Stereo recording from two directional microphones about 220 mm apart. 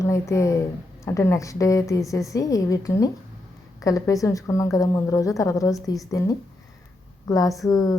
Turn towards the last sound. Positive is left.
turn(degrees=15)  # may be behind; listen again after turning